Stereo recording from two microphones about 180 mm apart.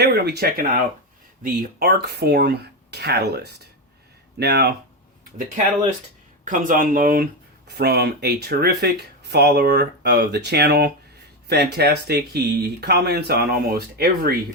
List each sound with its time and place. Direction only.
0.0 s speech: 65° right (ahead or behind)
6.4 s speech: 45° right (ahead or behind)
7.7 s speech: 65° right (ahead or behind)